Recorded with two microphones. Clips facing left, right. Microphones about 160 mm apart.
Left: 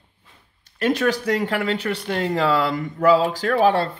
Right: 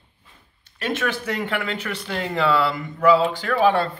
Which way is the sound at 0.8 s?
40° left (ahead or behind).